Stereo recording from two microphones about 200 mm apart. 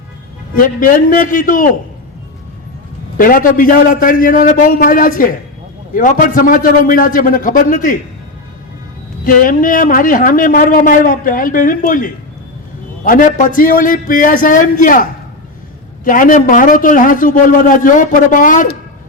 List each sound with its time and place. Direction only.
0.5 s a man's voice: 40° left (ahead or behind)
3.2 s a man's voice: 45° left (ahead or behind)
9.2 s a man's voice: 40° left (ahead or behind)
16.0 s a man's voice: 40° left (ahead or behind)